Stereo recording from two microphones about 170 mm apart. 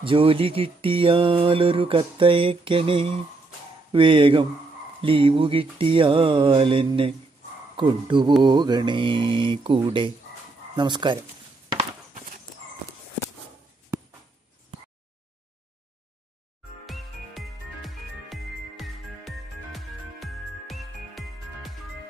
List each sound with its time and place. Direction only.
0.0 s mantra: 30° right (ahead or behind)
7.7 s speech: 30° right (ahead or behind)
12.1 s clip-clop: 50° right (ahead or behind)
16.8 s music: centre (ahead or behind)